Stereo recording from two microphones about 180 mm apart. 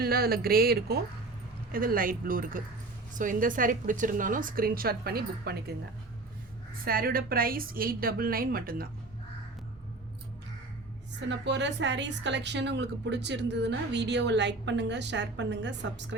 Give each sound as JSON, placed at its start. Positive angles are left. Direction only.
{"t": 0.0, "sound": "a woman's voice", "side_deg": -55}
{"t": 6.8, "sound": "a woman's voice", "side_deg": -55}
{"t": 11.3, "sound": "a woman's voice", "side_deg": -85}